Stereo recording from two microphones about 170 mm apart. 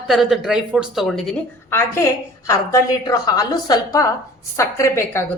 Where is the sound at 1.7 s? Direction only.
15° left (ahead or behind).